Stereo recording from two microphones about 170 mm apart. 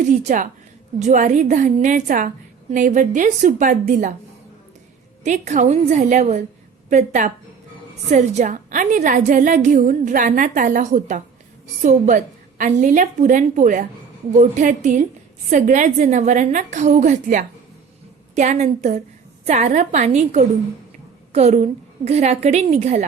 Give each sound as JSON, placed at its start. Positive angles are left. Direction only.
{"t": 0.0, "sound": "a woman's voice", "side_deg": -45}
{"t": 5.2, "sound": "a woman's voice", "side_deg": -45}